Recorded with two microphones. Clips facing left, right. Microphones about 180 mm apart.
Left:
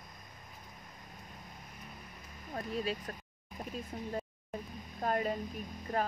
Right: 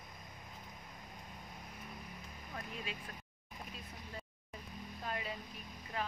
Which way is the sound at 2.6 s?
40° left (ahead or behind).